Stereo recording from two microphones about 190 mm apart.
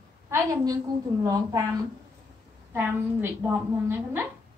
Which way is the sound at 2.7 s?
10° right (ahead or behind).